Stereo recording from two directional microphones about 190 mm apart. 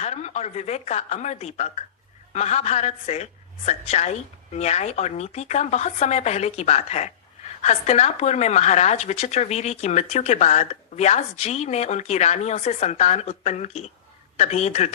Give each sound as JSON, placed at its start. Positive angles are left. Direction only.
{"t": 0.0, "sound": "speech", "side_deg": 35}